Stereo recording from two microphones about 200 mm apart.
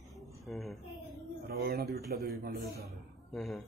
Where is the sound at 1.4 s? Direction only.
55° right (ahead or behind).